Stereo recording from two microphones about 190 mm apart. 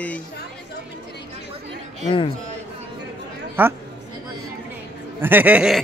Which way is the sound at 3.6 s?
10° right (ahead or behind).